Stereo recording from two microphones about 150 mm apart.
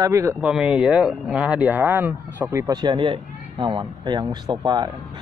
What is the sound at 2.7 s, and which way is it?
Speech, 30° right (ahead or behind).